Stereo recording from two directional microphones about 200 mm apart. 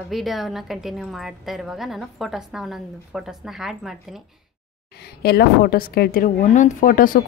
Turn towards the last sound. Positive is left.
turn(degrees=45)  # may be behind; listen again after turning